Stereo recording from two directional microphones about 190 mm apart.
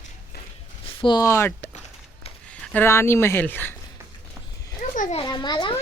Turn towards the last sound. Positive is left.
turn(degrees=25)  # may be behind; listen again after turning